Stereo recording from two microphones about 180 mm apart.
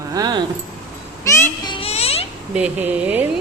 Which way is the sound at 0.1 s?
20° right (ahead or behind).